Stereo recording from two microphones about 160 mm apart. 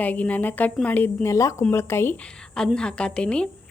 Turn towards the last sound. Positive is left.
turn(degrees=5)  # may be behind; listen again after turning